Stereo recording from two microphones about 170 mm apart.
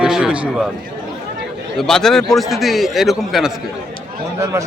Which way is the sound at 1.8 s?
5° left (ahead or behind).